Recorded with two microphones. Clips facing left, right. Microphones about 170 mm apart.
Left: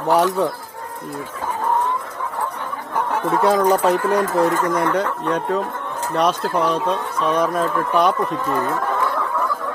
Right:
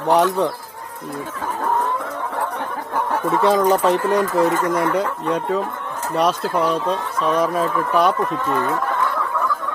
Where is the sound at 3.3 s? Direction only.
Centre (ahead or behind).